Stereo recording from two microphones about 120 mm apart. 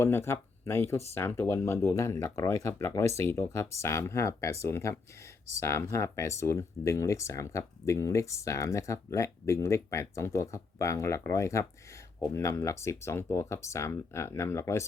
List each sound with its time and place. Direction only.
0.0 s speech: 20° left (ahead or behind)